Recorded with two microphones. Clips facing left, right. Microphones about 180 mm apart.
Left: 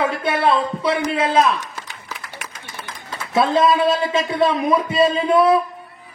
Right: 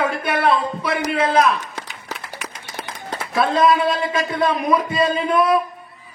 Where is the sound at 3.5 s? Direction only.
25° left (ahead or behind).